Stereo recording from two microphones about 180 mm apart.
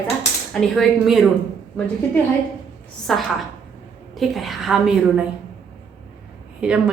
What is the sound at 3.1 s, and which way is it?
Speech, centre (ahead or behind).